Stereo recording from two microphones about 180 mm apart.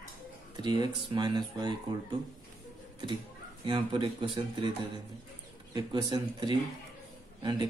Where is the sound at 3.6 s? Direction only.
25° right (ahead or behind).